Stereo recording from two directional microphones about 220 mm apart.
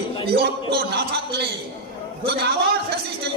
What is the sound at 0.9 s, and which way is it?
A man's voice, 45° right (ahead or behind).